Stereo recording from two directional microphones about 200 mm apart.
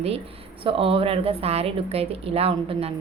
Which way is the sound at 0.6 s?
25° right (ahead or behind).